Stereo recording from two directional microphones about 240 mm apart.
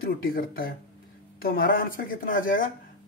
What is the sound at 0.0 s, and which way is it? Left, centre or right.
Speech, left.